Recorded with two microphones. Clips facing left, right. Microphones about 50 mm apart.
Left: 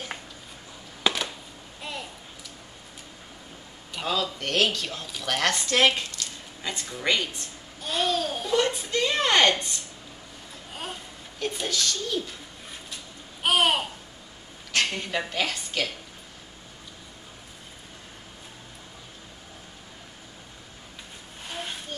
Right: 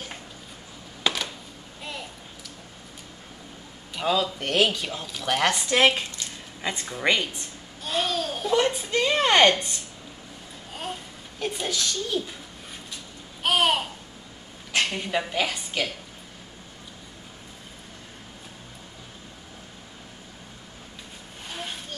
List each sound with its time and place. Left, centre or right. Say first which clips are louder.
1.8 s a sound: left 1 dB; centre
4.0 s speech: right 3 dB; centre
7.8 s babbling: left 1 dB; centre
8.5 s a woman's voice: right 1 dB; centre
10.8 s a child's voice: right 3 dB; centre
13.4 s babbling: even; centre
14.7 s a woman's voice: right 1 dB; centre
21.5 s vehicle: even; centre